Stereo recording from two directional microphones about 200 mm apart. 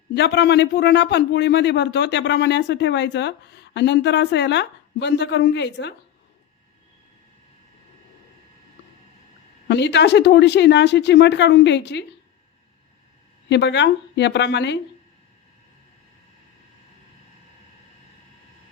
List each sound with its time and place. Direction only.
0.1 s a man's voice: 60° left (ahead or behind)
9.6 s a man's voice: 60° left (ahead or behind)
13.5 s a man's voice: 60° left (ahead or behind)